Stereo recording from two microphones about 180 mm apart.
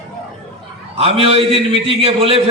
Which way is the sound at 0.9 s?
30° right (ahead or behind).